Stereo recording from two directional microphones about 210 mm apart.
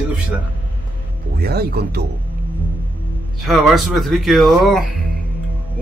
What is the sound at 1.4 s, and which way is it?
Speech, 50° right (ahead or behind).